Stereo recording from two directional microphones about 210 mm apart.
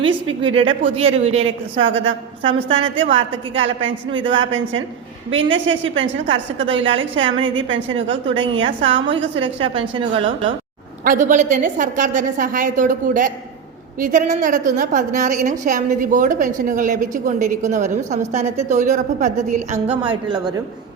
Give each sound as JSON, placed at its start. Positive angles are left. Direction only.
{"t": 0.0, "sound": "a woman's voice", "side_deg": -25}
{"t": 1.5, "sound": "a woman's voice", "side_deg": -65}
{"t": 5.9, "sound": "a woman's voice", "side_deg": -25}
{"t": 6.3, "sound": "a woman's voice", "side_deg": -60}
{"t": 7.3, "sound": "a woman's voice", "side_deg": -25}
{"t": 7.5, "sound": "a woman's voice", "side_deg": -65}
{"t": 9.6, "sound": "a woman's voice", "side_deg": -25}
{"t": 11.0, "sound": "a woman's voice", "side_deg": -40}
{"t": 20.1, "sound": "a woman's voice", "side_deg": -20}